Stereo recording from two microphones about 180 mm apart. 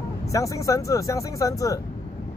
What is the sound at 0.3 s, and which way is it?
Speech, 20° left (ahead or behind).